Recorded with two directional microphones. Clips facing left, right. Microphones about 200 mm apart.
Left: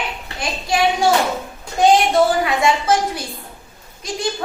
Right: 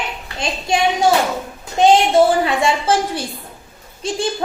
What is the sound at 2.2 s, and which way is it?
A woman's voice, 30° right (ahead or behind).